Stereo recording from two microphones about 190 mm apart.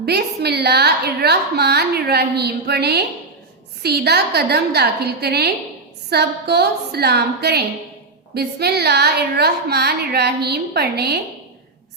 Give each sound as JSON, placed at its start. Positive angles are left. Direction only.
{"t": 0.0, "sound": "a woman's voice", "side_deg": -60}